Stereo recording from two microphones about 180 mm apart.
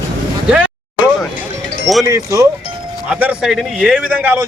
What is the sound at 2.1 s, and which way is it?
A man's voice, 15° right (ahead or behind).